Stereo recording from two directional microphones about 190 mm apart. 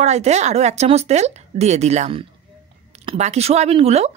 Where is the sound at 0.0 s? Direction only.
35° right (ahead or behind).